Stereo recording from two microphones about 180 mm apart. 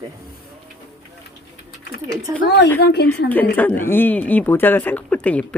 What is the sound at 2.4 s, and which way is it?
Speech, 70° left (ahead or behind).